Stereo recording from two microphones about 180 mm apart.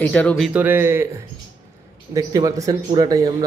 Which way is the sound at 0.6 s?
10° right (ahead or behind).